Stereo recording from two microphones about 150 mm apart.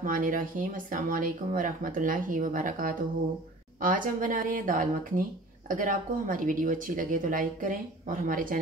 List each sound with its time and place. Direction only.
0.0 s speech: 65° right (ahead or behind)